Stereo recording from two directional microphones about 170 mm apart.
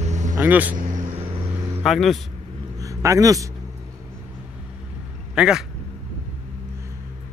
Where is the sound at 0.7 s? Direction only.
50° right (ahead or behind).